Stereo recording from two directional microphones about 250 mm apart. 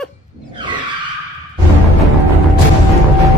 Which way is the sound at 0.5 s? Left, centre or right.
Centre.